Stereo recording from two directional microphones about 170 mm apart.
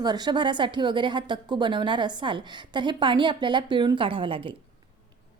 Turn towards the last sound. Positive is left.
turn(degrees=-30)  # may be behind; listen again after turning